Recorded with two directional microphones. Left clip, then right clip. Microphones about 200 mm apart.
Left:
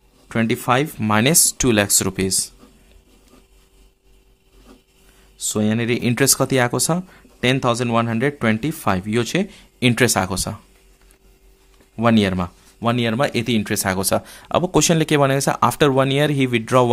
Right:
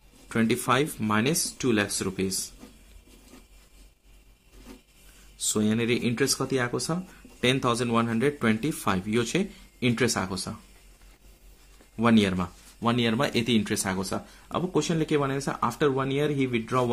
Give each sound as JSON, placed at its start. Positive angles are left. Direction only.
{"t": 0.3, "sound": "speech", "side_deg": 30}
{"t": 5.4, "sound": "speech", "side_deg": 25}
{"t": 12.0, "sound": "speech", "side_deg": 30}
{"t": 13.9, "sound": "speech", "side_deg": 40}